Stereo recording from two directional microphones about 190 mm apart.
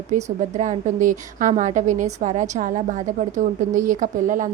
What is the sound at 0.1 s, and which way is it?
Speech, 40° right (ahead or behind).